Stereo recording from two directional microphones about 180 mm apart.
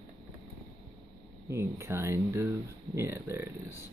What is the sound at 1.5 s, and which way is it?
Speech, 15° right (ahead or behind).